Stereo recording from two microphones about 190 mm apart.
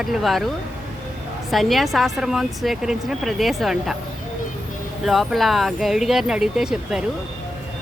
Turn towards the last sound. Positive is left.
turn(degrees=-5)  # may be behind; listen again after turning